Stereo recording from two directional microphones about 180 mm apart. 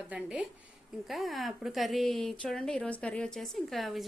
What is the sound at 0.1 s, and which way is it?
A woman's voice, 5° right (ahead or behind).